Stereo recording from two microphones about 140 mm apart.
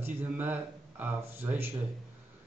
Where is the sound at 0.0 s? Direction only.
15° right (ahead or behind).